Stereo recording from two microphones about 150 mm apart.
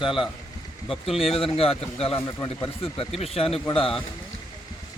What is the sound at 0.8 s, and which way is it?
Speech, centre (ahead or behind).